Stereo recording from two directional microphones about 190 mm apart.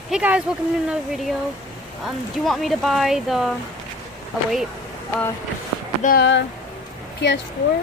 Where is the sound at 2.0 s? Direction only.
Centre (ahead or behind).